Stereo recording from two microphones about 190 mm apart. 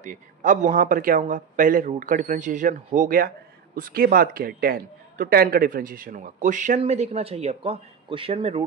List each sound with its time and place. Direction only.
0.0 s speech: 45° right (ahead or behind)